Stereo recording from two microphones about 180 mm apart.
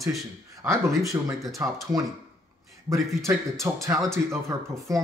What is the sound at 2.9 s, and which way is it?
Speech, centre (ahead or behind).